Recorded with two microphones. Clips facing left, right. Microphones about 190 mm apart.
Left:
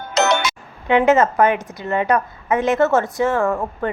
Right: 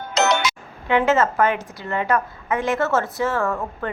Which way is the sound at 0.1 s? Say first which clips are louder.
Left 2 dB; 55° left (ahead or behind).